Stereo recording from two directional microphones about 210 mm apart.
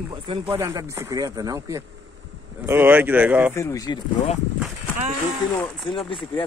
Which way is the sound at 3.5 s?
15° left (ahead or behind).